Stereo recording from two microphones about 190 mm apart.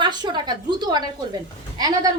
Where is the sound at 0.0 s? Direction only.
25° right (ahead or behind).